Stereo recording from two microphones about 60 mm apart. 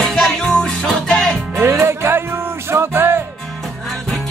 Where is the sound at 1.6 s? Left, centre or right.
Right.